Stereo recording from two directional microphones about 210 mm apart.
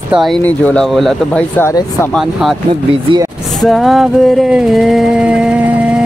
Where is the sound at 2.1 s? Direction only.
Centre (ahead or behind).